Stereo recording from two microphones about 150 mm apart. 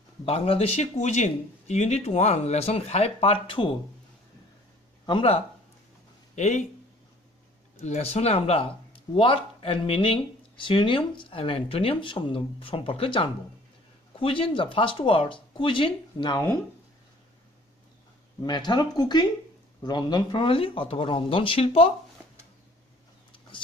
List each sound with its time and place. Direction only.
0.2 s speech: 40° left (ahead or behind)
5.0 s speech: 35° left (ahead or behind)
6.3 s speech: 55° left (ahead or behind)
7.8 s speech: 45° left (ahead or behind)
18.4 s speech: 30° left (ahead or behind)